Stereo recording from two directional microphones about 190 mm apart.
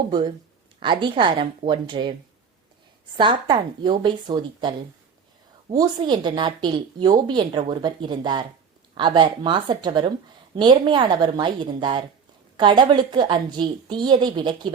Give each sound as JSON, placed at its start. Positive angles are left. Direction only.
{"t": 0.1, "sound": "a woman's voice", "side_deg": -20}
{"t": 3.2, "sound": "a woman's voice", "side_deg": -25}